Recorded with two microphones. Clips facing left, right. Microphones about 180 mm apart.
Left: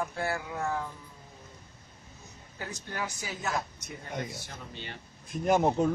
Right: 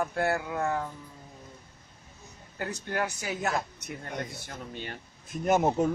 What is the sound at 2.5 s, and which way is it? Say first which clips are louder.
Speech: right 6 dB; 60° right (ahead or behind).